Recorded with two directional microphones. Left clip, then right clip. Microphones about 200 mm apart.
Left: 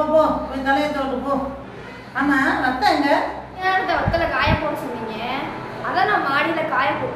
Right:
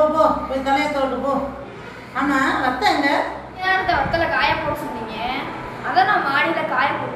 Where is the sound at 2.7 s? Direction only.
20° left (ahead or behind).